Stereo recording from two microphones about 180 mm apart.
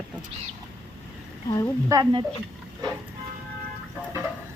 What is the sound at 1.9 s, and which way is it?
Speech, 20° right (ahead or behind).